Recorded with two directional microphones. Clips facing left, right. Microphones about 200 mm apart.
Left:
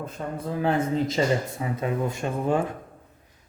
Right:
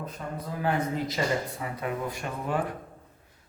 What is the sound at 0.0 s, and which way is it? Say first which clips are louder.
Speech: left 4 dB; 25° left (ahead or behind).